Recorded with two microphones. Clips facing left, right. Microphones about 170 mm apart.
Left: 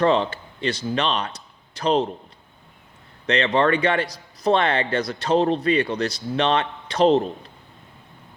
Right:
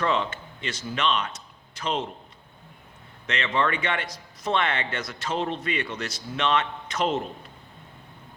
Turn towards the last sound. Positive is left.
turn(degrees=35)  # may be behind; listen again after turning